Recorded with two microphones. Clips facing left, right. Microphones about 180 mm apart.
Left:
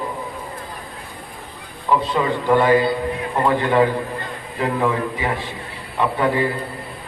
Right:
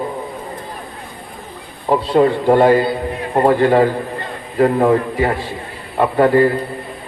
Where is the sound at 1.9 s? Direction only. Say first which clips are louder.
Right 6 dB; 45° right (ahead or behind).